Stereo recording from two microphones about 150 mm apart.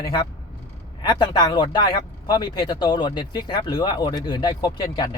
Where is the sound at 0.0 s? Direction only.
30° left (ahead or behind).